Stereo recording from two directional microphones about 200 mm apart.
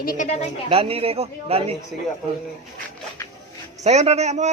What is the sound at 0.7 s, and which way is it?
A man's voice, 30° right (ahead or behind).